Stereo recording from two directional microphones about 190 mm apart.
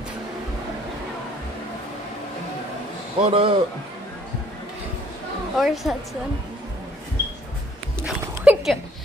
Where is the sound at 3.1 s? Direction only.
30° right (ahead or behind).